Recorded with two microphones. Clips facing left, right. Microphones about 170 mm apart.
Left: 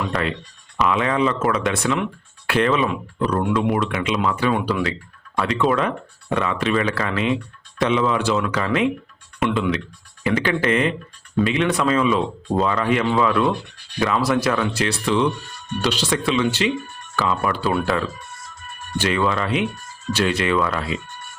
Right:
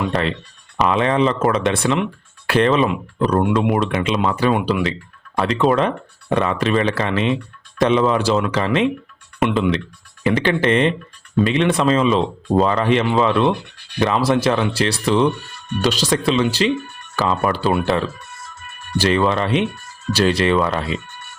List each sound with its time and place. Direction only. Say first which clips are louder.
0.1 s speech: right 3 dB; 30° right (ahead or behind)
4.5 s speech: right 2 dB; 20° right (ahead or behind)
5.4 s speech: right 3 dB; 30° right (ahead or behind)
7.8 s speech: right 4 dB; 35° right (ahead or behind)
18.9 s speech: right 4 dB; 35° right (ahead or behind)